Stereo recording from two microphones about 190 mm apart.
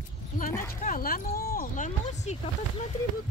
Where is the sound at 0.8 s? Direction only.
50° left (ahead or behind).